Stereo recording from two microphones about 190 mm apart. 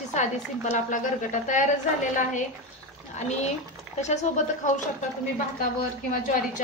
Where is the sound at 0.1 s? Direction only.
40° left (ahead or behind).